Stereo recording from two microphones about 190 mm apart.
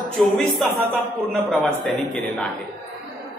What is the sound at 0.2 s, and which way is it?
Speech, centre (ahead or behind).